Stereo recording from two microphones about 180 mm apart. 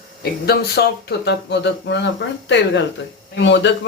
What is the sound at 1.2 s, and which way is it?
Speech, 75° left (ahead or behind).